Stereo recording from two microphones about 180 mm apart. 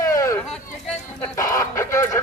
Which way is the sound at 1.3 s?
15° left (ahead or behind).